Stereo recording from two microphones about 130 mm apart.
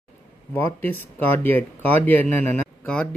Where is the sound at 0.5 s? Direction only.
15° left (ahead or behind).